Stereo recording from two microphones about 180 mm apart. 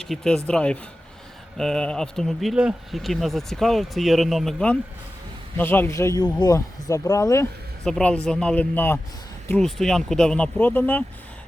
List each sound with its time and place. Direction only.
0.1 s speech: centre (ahead or behind)
7.9 s speech: 5° left (ahead or behind)